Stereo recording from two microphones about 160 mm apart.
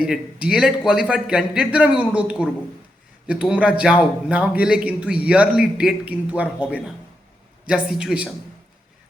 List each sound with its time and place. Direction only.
0.0 s a man's voice: 5° right (ahead or behind)